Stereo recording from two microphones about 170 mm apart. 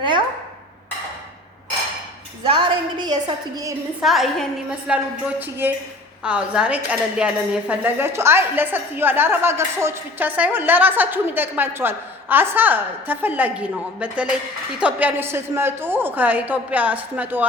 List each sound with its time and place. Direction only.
2.4 s a woman's voice: 30° right (ahead or behind)
4.0 s speech: centre (ahead or behind)